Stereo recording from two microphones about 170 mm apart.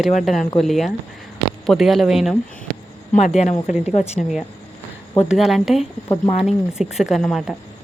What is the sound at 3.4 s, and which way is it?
Speech, 45° left (ahead or behind).